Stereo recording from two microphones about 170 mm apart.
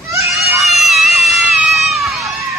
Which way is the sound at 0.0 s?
15° right (ahead or behind).